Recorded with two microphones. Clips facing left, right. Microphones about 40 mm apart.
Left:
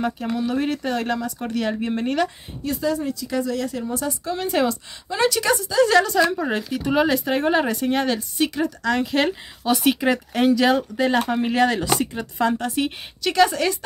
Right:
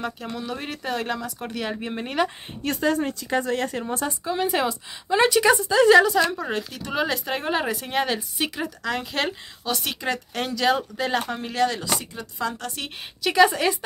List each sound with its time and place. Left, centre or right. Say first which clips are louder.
0.0 s speech: left 7 dB; centre
2.6 s speech: even; right
4.2 s a woman's voice: left 2 dB; centre
5.1 s speech: right 2 dB; centre
5.9 s a woman's voice: right 1 dB; centre
6.3 s speech: left 5 dB; centre
9.7 s speech: left 8 dB; centre
11.4 s speech: left 4 dB; left
12.5 s speech: left 9 dB; left
13.2 s a woman's voice: even; centre